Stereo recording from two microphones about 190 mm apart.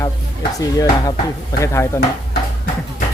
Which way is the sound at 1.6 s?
15° left (ahead or behind).